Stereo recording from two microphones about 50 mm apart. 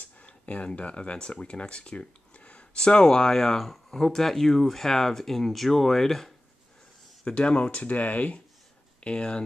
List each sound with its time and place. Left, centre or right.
0.2 s speech: left; by 6.3 s centre
7.2 s speech: left
9.0 s speech: centre